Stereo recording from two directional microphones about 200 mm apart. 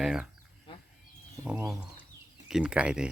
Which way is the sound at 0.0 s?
5° right (ahead or behind).